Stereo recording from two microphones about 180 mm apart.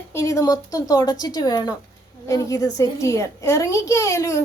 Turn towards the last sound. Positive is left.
turn(degrees=15)  # may be behind; listen again after turning